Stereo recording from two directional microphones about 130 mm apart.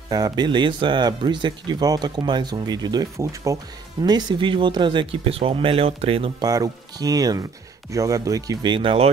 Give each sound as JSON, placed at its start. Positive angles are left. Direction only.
{"t": 0.1, "sound": "speech", "side_deg": -30}
{"t": 6.4, "sound": "speech", "side_deg": -30}